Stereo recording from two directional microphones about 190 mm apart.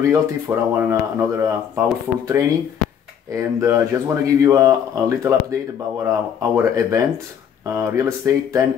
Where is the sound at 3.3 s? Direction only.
15° right (ahead or behind).